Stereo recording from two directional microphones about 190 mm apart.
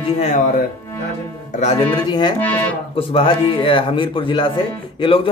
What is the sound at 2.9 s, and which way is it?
Speech, 30° left (ahead or behind).